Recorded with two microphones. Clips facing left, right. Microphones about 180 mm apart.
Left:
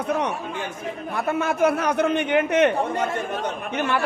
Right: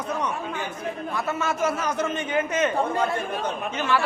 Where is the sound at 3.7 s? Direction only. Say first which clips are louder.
Left 1 dB; 50° left (ahead or behind).